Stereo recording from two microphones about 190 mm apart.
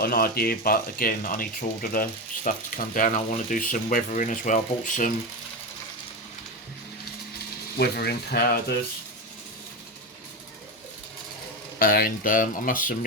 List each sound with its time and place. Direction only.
0.0 s speech: 55° left (ahead or behind)
7.8 s speech: 55° left (ahead or behind)
11.8 s speech: 50° left (ahead or behind)